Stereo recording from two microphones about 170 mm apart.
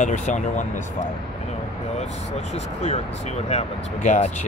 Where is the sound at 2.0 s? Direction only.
40° left (ahead or behind).